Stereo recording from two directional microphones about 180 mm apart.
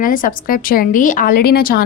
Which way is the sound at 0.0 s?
50° left (ahead or behind).